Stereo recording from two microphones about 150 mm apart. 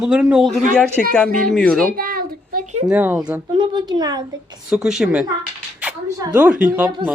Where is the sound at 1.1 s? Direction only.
5° left (ahead or behind).